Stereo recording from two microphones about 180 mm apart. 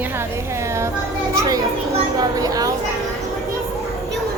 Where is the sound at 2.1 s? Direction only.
20° right (ahead or behind).